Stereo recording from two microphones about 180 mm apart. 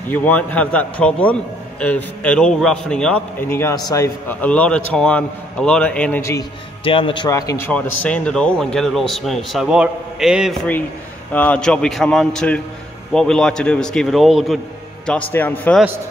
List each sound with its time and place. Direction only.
0.1 s a man's voice: 10° left (ahead or behind)
6.8 s a man's voice: 30° left (ahead or behind)
7.2 s speech: 20° left (ahead or behind); by 10.7 s 5° right (ahead or behind)
11.3 s a man's voice: 10° left (ahead or behind)